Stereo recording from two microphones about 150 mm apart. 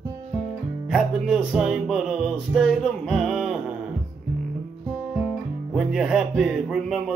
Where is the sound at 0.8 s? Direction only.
Centre (ahead or behind).